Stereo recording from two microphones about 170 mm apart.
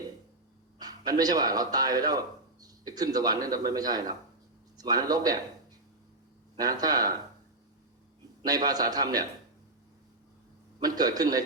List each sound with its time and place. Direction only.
0.8 s a man's voice: 25° right (ahead or behind)
6.6 s a man's voice: 25° right (ahead or behind)
8.4 s a man's voice: 25° right (ahead or behind)
10.8 s a man's voice: 25° right (ahead or behind)